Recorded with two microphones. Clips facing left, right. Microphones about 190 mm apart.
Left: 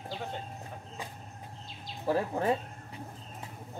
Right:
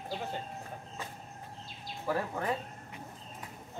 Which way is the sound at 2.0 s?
25° left (ahead or behind).